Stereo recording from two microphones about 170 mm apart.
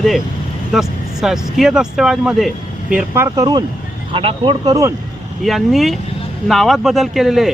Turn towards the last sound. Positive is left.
turn(degrees=0)  # may be behind; listen again after turning